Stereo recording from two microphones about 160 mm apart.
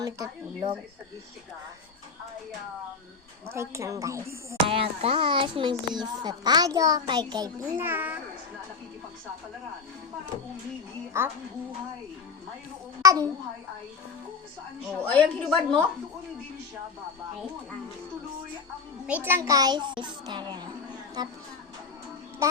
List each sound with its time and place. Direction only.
0.0 s a child's voice: 25° right (ahead or behind)
3.5 s a child's voice: 20° right (ahead or behind)
4.7 s a child's voice: 35° right (ahead or behind)
7.8 s a woman's voice: 10° right (ahead or behind)
13.0 s a child's voice: 20° right (ahead or behind)
14.8 s a woman's voice: 5° left (ahead or behind)
19.0 s a child's voice: 10° right (ahead or behind); by 20.7 s 25° right (ahead or behind)